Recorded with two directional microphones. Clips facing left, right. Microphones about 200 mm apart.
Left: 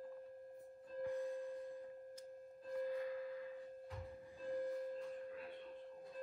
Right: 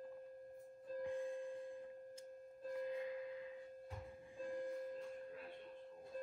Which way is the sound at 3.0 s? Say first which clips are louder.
Left 2 dB; 20° right (ahead or behind).